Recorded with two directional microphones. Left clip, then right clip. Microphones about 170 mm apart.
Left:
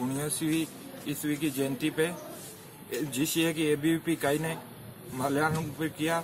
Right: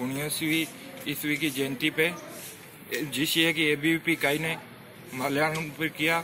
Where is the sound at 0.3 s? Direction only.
50° left (ahead or behind).